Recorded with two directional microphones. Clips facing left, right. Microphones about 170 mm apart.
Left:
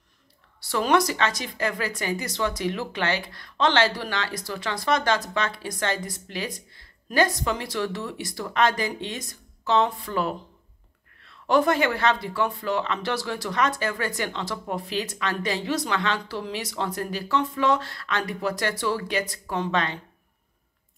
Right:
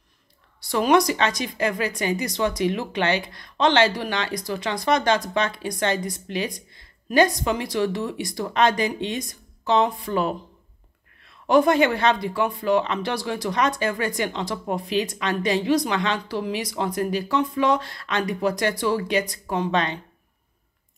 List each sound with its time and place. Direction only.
0.6 s a woman's voice: 15° right (ahead or behind)